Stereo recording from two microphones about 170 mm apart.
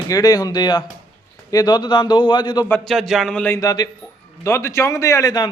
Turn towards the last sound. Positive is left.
turn(degrees=20)  # may be behind; listen again after turning